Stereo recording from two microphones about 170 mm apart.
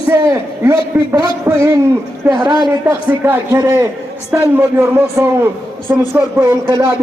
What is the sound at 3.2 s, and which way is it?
A man's voice, 15° right (ahead or behind).